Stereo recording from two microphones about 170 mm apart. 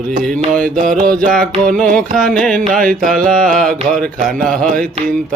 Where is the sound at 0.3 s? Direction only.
5° left (ahead or behind).